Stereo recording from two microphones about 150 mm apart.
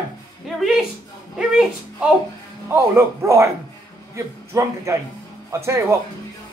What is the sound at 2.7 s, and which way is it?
A man's voice, 15° right (ahead or behind).